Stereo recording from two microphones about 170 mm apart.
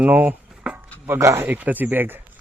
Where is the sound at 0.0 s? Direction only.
10° right (ahead or behind).